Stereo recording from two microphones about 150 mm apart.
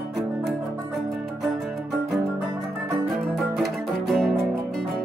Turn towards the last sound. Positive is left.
turn(degrees=0)  # may be behind; listen again after turning